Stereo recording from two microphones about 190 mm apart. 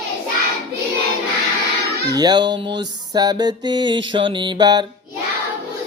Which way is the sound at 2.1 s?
20° right (ahead or behind).